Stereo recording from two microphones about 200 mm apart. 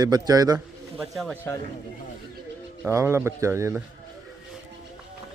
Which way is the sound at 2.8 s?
15° right (ahead or behind).